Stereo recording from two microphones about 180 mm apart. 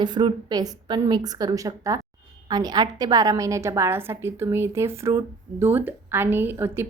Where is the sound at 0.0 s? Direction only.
25° right (ahead or behind).